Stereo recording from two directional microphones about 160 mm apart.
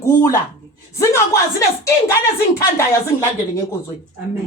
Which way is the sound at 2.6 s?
20° left (ahead or behind).